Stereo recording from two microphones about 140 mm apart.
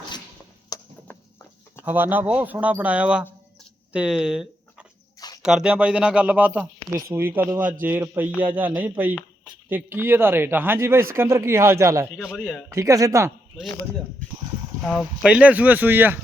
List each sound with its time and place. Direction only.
0.7 s a sound: 25° left (ahead or behind)
1.8 s speech: 10° right (ahead or behind)
12.1 s a man's voice: centre (ahead or behind)
12.7 s speech: 25° right (ahead or behind)
14.8 s speech: centre (ahead or behind)